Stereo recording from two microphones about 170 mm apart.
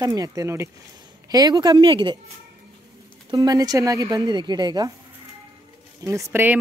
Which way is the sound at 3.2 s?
20° right (ahead or behind).